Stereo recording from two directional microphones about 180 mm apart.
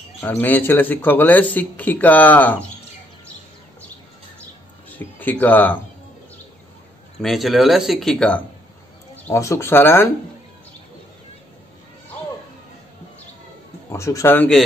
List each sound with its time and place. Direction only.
0.2 s speech: 10° left (ahead or behind)
4.8 s speech: 10° left (ahead or behind)
7.2 s speech: centre (ahead or behind)
9.1 s speech: 15° left (ahead or behind)
13.8 s speech: 15° left (ahead or behind)